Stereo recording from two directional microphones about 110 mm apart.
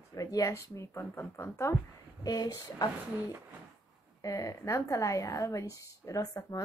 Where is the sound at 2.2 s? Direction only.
35° left (ahead or behind).